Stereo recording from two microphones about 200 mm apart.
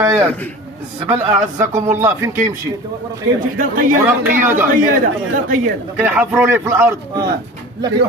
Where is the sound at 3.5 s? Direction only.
45° right (ahead or behind).